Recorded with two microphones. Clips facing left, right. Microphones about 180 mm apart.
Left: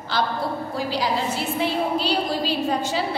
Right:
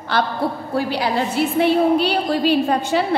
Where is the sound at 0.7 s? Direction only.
60° right (ahead or behind).